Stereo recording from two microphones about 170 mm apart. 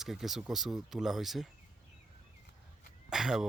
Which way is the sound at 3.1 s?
5° right (ahead or behind).